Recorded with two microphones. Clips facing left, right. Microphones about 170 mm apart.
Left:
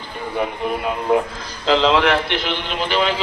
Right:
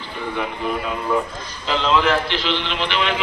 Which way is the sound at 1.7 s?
80° left.